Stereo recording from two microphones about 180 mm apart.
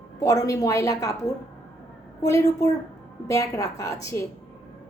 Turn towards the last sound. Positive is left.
turn(degrees=15)  # may be behind; listen again after turning